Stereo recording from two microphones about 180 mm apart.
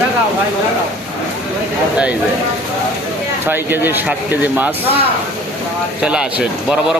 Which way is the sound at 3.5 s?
10° right (ahead or behind).